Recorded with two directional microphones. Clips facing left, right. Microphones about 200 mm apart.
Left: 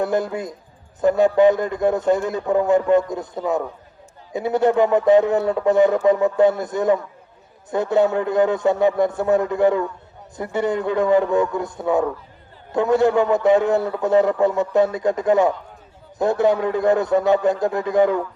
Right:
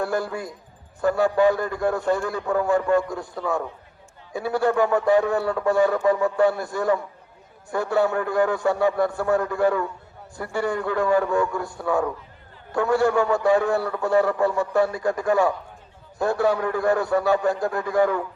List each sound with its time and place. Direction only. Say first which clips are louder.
0.0 s a man's voice: left 4 dB; 20° left (ahead or behind)